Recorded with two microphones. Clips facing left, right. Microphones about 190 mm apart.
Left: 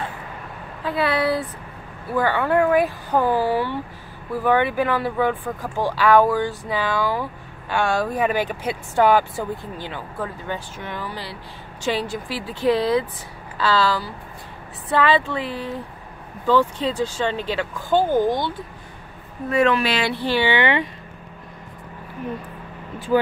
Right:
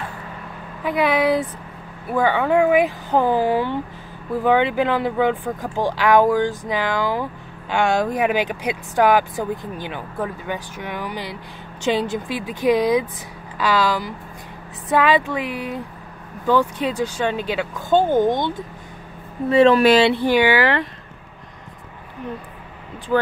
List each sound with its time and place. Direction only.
0.8 s speech: 15° right (ahead or behind)
19.5 s a woman's voice: 30° right (ahead or behind)
20.2 s speech: 15° right (ahead or behind)
20.5 s speech: centre (ahead or behind)